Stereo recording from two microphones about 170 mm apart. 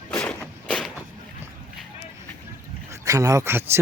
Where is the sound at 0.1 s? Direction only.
15° left (ahead or behind).